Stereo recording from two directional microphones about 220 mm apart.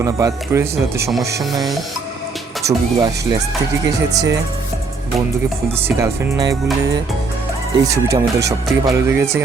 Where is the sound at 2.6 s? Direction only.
50° right (ahead or behind).